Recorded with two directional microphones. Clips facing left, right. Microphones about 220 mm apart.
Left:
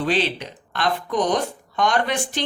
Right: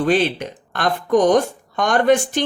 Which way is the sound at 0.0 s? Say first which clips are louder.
Right 5 dB; 50° right (ahead or behind).